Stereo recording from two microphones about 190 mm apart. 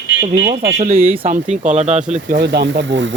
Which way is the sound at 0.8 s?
35° right (ahead or behind).